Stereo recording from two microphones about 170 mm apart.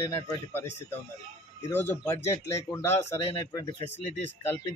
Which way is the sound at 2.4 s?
15° left (ahead or behind).